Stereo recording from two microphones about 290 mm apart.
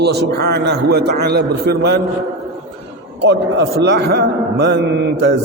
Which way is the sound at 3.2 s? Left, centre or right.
Right.